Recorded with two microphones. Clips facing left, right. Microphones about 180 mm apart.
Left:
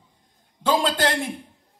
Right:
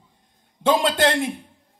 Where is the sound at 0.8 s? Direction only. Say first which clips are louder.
Right 3 dB; 25° right (ahead or behind).